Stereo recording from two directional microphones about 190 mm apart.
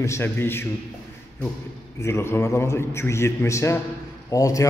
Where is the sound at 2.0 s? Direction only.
15° left (ahead or behind).